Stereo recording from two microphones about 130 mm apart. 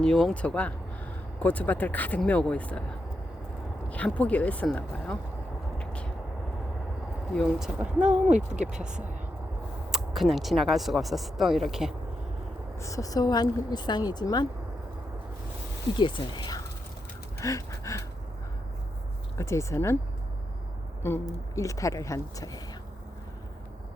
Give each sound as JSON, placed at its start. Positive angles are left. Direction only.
{"t": 0.0, "sound": "speech", "side_deg": 5}
{"t": 3.8, "sound": "speech", "side_deg": 10}
{"t": 5.7, "sound": "vehicle", "side_deg": 10}
{"t": 7.3, "sound": "speech", "side_deg": -5}
{"t": 12.8, "sound": "a woman's voice", "side_deg": 25}
{"t": 16.0, "sound": "a woman's voice", "side_deg": 35}
{"t": 17.4, "sound": "a sound", "side_deg": 25}
{"t": 19.4, "sound": "speech", "side_deg": 20}
{"t": 21.0, "sound": "speech", "side_deg": 20}